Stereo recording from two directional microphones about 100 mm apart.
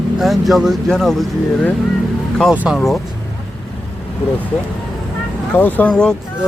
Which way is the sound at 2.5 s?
15° right (ahead or behind).